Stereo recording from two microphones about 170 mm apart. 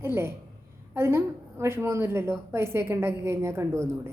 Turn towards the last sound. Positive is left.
turn(degrees=-15)  # may be behind; listen again after turning